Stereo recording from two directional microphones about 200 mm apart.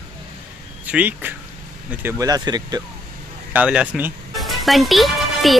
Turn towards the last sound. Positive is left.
turn(degrees=0)  # may be behind; listen again after turning